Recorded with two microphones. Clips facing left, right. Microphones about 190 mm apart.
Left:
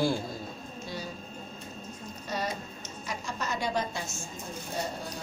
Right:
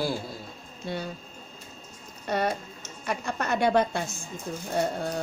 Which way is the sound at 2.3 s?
60° right (ahead or behind).